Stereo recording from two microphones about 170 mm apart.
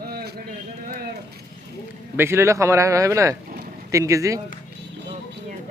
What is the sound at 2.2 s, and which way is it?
Speech, 15° right (ahead or behind).